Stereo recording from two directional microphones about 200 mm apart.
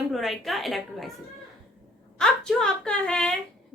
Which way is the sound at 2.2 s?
5° left (ahead or behind).